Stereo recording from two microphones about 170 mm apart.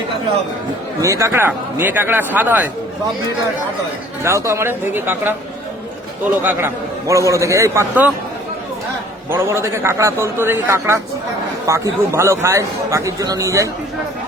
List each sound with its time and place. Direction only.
1.0 s speech: 20° right (ahead or behind)
4.2 s speech: 15° right (ahead or behind)
6.4 s speech: 10° right (ahead or behind)
9.3 s speech: 15° right (ahead or behind)